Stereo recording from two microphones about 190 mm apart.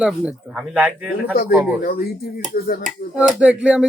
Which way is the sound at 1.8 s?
50° left (ahead or behind).